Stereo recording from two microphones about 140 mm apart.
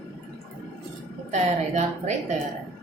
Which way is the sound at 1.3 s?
60° right (ahead or behind).